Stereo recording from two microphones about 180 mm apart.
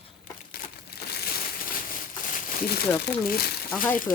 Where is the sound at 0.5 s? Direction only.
55° left (ahead or behind).